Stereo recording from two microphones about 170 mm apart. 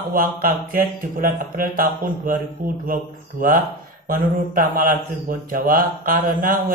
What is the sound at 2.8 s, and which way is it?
A man's voice, 55° right (ahead or behind).